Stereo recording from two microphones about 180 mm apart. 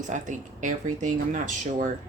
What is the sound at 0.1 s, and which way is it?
Speech, 45° right (ahead or behind).